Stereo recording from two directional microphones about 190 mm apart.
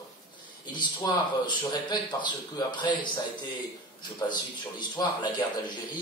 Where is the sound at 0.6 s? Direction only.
25° left (ahead or behind).